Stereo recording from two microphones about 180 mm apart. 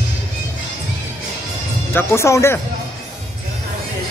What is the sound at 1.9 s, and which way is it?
Speech, 15° left (ahead or behind).